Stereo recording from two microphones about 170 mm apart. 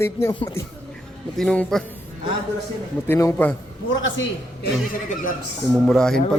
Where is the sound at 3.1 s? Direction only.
15° left (ahead or behind).